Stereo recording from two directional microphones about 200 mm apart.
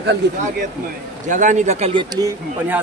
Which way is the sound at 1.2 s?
40° right (ahead or behind).